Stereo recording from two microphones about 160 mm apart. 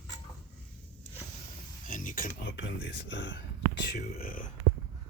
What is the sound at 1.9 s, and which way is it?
Speech, 55° left (ahead or behind).